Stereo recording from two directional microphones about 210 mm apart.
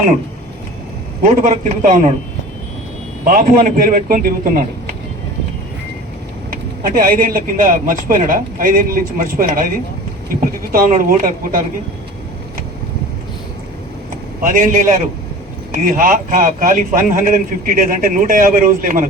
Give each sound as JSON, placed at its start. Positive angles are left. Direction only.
{"t": 1.2, "sound": "a man's voice", "side_deg": -40}
{"t": 3.2, "sound": "speech", "side_deg": -40}
{"t": 6.5, "sound": "a man's voice", "side_deg": -45}
{"t": 14.4, "sound": "a man's voice", "side_deg": -40}